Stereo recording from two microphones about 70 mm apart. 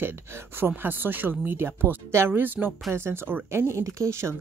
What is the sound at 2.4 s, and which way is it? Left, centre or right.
Speech, right.